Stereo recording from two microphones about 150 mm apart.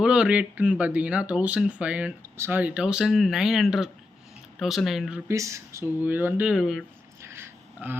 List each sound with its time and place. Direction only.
0.0 s speech: 5° right (ahead or behind)
5.3 s speech: 20° right (ahead or behind); by 6.8 s 5° right (ahead or behind)
7.2 s a sound: 15° right (ahead or behind)